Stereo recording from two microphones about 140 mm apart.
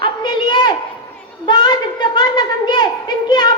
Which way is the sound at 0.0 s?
30° left (ahead or behind).